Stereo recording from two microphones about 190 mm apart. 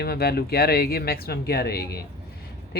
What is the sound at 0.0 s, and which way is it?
Speech, 55° left (ahead or behind).